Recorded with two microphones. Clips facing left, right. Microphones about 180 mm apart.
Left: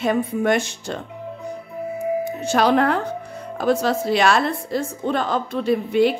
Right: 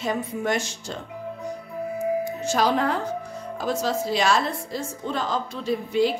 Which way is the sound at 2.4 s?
65° left (ahead or behind).